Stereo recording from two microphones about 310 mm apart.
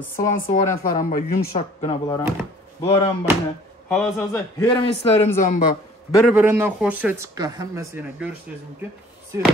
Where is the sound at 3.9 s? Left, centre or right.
Centre; by 5.7 s left.